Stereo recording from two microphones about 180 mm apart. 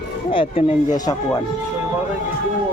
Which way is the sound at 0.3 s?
30° left (ahead or behind).